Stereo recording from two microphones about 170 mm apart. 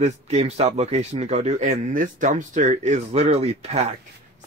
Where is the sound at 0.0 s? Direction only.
40° right (ahead or behind).